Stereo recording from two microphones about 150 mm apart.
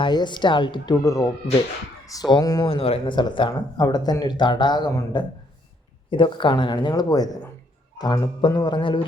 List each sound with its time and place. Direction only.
0.0 s speech: 30° left (ahead or behind)
2.6 s speech: 40° left (ahead or behind)